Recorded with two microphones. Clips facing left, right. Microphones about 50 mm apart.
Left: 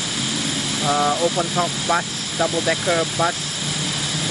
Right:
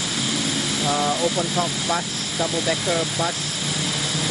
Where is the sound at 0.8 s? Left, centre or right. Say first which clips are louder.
Left 4 dB; centre.